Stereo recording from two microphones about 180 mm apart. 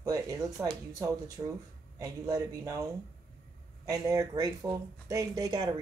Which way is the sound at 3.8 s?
20° right (ahead or behind).